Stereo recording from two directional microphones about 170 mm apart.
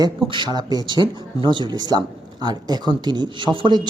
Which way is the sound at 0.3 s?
25° right (ahead or behind).